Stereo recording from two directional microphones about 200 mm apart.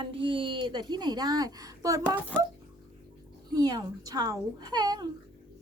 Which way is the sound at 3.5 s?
20° right (ahead or behind).